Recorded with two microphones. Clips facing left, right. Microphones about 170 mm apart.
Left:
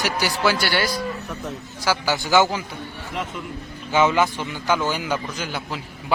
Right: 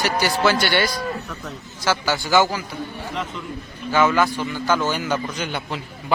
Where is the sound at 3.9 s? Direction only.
15° left (ahead or behind).